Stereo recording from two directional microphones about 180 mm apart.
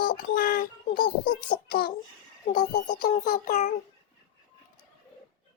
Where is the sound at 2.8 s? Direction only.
45° left (ahead or behind).